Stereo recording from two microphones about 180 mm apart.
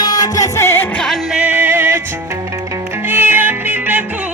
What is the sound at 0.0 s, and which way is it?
Music, 20° left (ahead or behind).